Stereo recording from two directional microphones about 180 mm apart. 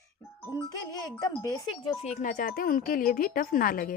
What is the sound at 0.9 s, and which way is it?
Speech, 20° left (ahead or behind).